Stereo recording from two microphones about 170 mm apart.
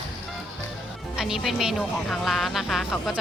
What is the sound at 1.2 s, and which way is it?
Speech, centre (ahead or behind).